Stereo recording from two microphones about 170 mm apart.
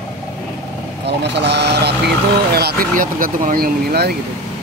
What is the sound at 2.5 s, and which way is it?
Speech, 65° right (ahead or behind).